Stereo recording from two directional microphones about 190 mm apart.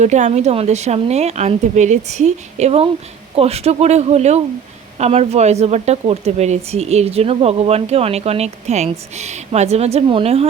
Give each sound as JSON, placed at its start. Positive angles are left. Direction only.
{"t": 0.0, "sound": "a woman's voice", "side_deg": -35}